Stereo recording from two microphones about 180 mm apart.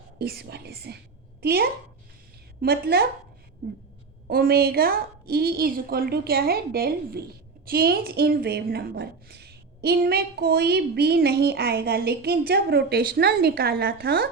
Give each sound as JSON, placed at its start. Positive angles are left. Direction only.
{"t": 0.2, "sound": "a woman's voice", "side_deg": -60}
{"t": 4.3, "sound": "a woman's voice", "side_deg": -55}